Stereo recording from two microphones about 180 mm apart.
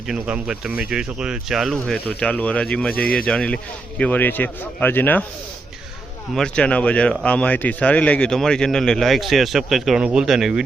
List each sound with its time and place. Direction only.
0.1 s speech: 5° right (ahead or behind)
2.9 s speech: 55° left (ahead or behind)
3.2 s a man's voice: 5° left (ahead or behind)
6.3 s speech: 5° left (ahead or behind)